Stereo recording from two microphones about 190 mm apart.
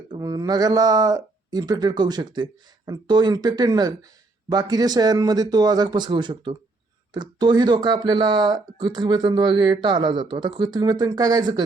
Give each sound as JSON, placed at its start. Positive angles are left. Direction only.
{"t": 0.1, "sound": "speech", "side_deg": -20}